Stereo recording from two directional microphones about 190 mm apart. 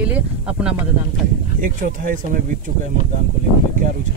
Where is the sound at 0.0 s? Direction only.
5° right (ahead or behind).